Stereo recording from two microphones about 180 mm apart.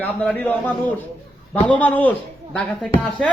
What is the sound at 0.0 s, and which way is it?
Speech, 10° left (ahead or behind).